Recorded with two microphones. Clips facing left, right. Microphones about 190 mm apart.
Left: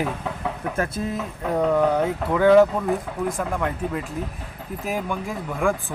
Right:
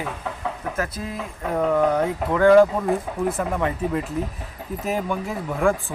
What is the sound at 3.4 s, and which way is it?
Speech, 5° right (ahead or behind).